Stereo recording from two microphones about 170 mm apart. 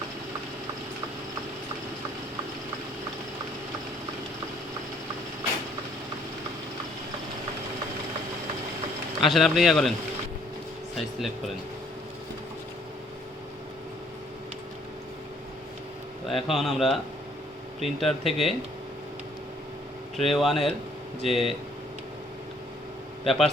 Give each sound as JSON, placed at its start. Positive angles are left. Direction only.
{"t": 9.2, "sound": "speech", "side_deg": 0}
{"t": 10.9, "sound": "speech", "side_deg": 0}
{"t": 16.2, "sound": "speech", "side_deg": 0}
{"t": 20.1, "sound": "speech", "side_deg": 0}
{"t": 23.2, "sound": "speech", "side_deg": 0}